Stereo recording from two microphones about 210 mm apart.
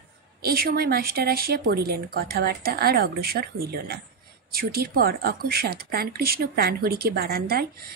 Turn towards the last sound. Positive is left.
turn(degrees=-45)  # may be behind; listen again after turning